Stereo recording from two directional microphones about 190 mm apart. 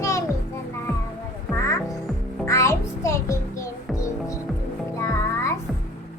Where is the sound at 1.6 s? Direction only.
15° left (ahead or behind).